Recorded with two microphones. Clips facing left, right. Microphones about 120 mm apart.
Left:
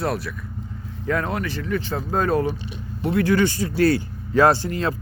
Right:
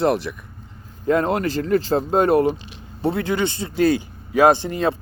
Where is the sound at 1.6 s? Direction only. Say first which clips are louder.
Right 7 dB; 35° right (ahead or behind).